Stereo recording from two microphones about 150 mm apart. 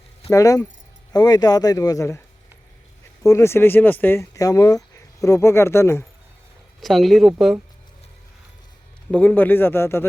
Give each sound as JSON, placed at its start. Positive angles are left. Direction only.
{"t": 0.3, "sound": "speech", "side_deg": 20}
{"t": 3.2, "sound": "speech", "side_deg": 20}
{"t": 6.7, "sound": "speech", "side_deg": 0}
{"t": 9.1, "sound": "speech", "side_deg": 10}